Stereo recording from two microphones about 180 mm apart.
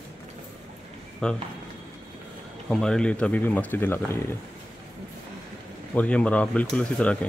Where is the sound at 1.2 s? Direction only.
5° left (ahead or behind).